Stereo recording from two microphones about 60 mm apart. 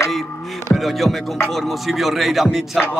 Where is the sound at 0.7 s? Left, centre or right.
Centre.